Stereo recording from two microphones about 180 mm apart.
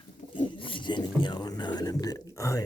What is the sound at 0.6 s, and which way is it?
Speech, 25° left (ahead or behind).